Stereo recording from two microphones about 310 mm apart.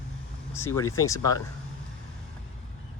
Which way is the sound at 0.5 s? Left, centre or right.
Centre.